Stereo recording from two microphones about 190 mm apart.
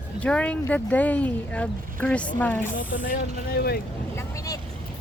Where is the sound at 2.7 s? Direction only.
45° left (ahead or behind).